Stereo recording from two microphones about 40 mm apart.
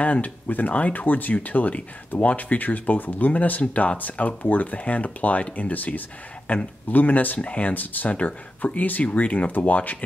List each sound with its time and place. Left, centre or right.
0.0 s speech: left
6.4 s speech: left
6.9 s speech: left